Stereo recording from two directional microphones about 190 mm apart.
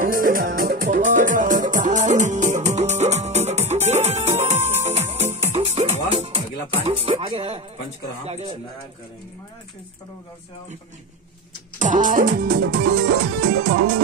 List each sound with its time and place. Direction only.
0.0 s music: 45° right (ahead or behind); by 7.6 s 30° right (ahead or behind)
8.3 s speech: 35° right (ahead or behind)
11.8 s music: 40° right (ahead or behind)